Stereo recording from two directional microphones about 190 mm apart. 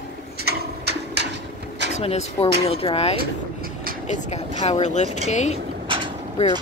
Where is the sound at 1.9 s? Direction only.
35° left (ahead or behind).